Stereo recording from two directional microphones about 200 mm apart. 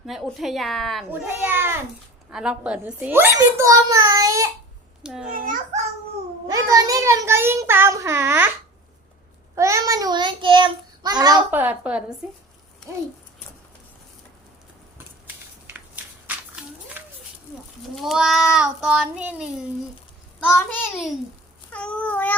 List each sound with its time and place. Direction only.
0.0 s a child's voice: centre (ahead or behind)
1.1 s a child's voice: 10° right (ahead or behind)
5.3 s a child's voice: 40° right (ahead or behind)
6.5 s a child's voice: 15° right (ahead or behind)
9.6 s a child's voice: 15° right (ahead or behind)
11.5 s a child's voice: 5° right (ahead or behind)
16.2 s a sound: 5° right (ahead or behind)
17.9 s a child's voice: centre (ahead or behind)
20.4 s a child's voice: 10° left (ahead or behind)
21.7 s child singing: 5° left (ahead or behind)